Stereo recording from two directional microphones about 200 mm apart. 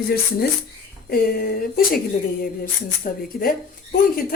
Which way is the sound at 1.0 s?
50° left (ahead or behind).